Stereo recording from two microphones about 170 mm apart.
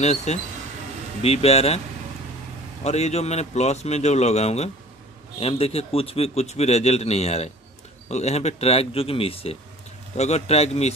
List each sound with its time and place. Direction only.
0.0 s a man's voice: 40° left (ahead or behind)
2.8 s a man's voice: 40° left (ahead or behind)